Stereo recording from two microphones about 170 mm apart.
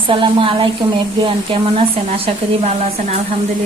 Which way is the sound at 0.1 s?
30° right (ahead or behind).